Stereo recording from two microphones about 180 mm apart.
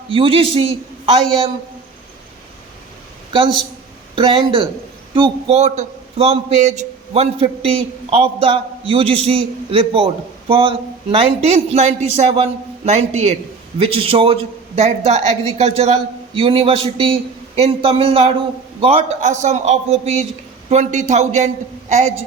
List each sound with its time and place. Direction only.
0.1 s a man's voice: 30° right (ahead or behind)
4.1 s a man's voice: 30° right (ahead or behind)